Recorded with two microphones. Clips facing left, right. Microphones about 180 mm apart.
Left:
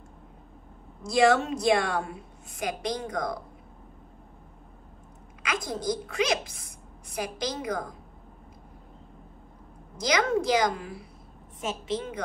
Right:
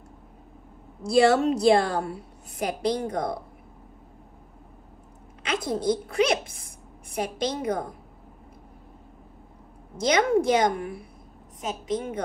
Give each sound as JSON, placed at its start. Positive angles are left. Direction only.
{"t": 1.0, "sound": "a woman's voice", "side_deg": -30}
{"t": 5.4, "sound": "a woman's voice", "side_deg": -30}
{"t": 9.9, "sound": "a woman's voice", "side_deg": -25}